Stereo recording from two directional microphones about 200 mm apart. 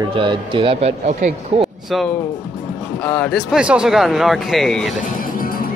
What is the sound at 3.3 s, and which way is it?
Speech, 5° right (ahead or behind).